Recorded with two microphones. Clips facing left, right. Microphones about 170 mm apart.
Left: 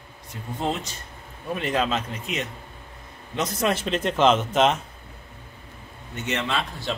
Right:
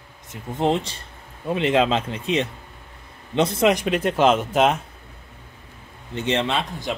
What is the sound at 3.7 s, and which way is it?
Speech, 10° right (ahead or behind).